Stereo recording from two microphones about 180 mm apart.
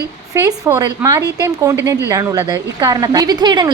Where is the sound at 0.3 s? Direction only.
15° right (ahead or behind).